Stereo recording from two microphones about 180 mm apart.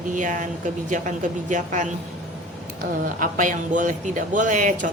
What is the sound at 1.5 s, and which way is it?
Speech, 45° right (ahead or behind).